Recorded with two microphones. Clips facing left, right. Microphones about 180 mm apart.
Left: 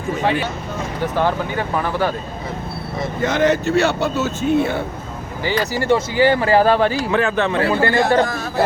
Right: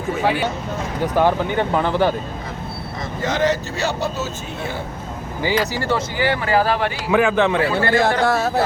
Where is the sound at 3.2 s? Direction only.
55° left (ahead or behind).